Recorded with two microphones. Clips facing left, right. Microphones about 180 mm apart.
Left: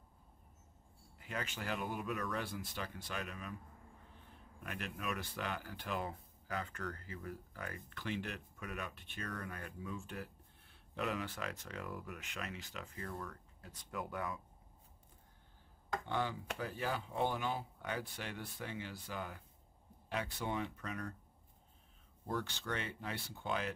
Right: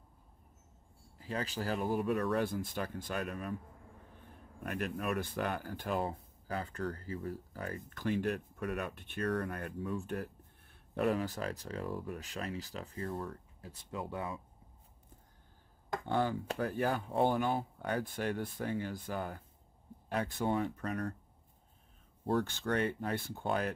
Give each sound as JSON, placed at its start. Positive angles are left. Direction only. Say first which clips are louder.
{"t": 1.1, "sound": "speech", "louder": "right 6 dB", "side_deg": -35}
{"t": 2.4, "sound": "speech", "louder": "right 8 dB", "side_deg": -50}
{"t": 4.6, "sound": "speech", "louder": "right 7 dB", "side_deg": -50}
{"t": 5.7, "sound": "speech", "louder": "right 6 dB", "side_deg": -40}
{"t": 11.0, "sound": "speech", "louder": "right 7 dB", "side_deg": -40}
{"t": 16.1, "sound": "speech", "louder": "right 7 dB", "side_deg": -45}
{"t": 22.3, "sound": "speech", "louder": "right 8 dB", "side_deg": -50}